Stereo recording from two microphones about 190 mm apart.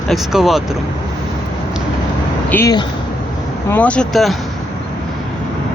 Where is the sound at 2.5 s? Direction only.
10° left (ahead or behind).